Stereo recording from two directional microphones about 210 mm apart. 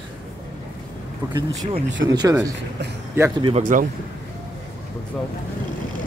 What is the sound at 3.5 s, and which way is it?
Speech, 35° right (ahead or behind).